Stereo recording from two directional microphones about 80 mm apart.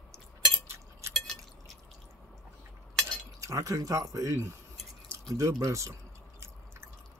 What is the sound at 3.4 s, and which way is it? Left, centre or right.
Speech, right.